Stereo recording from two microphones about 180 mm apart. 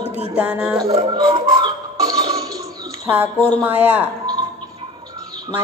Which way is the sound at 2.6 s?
15° right (ahead or behind).